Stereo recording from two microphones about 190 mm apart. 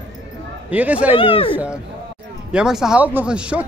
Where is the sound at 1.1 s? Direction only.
30° left (ahead or behind).